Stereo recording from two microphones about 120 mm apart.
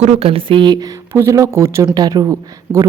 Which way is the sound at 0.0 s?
55° right (ahead or behind).